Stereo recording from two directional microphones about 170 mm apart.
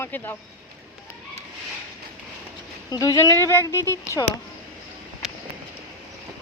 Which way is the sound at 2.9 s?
20° left (ahead or behind).